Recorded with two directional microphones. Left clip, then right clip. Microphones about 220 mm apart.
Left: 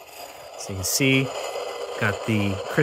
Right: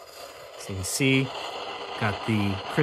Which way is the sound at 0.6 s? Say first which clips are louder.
Left 3 dB; 5° left (ahead or behind).